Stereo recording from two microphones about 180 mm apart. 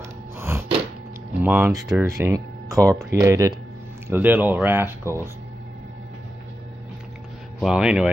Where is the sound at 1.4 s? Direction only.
10° right (ahead or behind).